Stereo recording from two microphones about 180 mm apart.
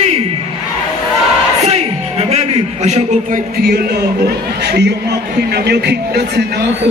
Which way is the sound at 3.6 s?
60° right (ahead or behind).